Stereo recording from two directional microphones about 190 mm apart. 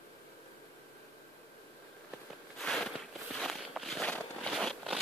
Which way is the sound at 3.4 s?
Centre (ahead or behind).